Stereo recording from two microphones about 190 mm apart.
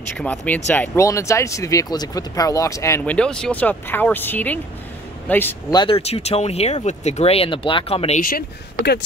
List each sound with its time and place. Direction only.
0.2 s speech: 10° left (ahead or behind)
5.8 s speech: 30° left (ahead or behind)
8.2 s speech: 50° left (ahead or behind)